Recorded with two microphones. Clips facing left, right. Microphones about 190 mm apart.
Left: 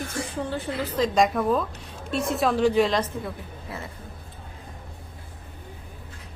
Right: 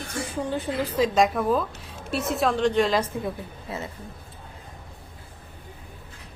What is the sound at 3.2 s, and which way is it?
Speech, 20° right (ahead or behind).